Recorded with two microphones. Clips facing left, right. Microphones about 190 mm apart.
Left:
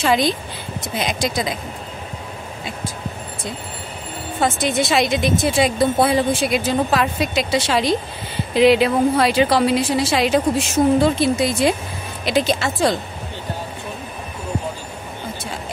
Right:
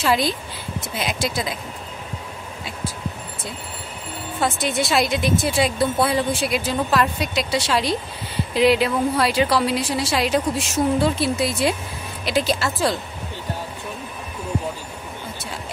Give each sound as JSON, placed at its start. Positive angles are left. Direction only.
{"t": 0.0, "sound": "a woman's voice", "side_deg": -5}
{"t": 4.4, "sound": "a woman's voice", "side_deg": 0}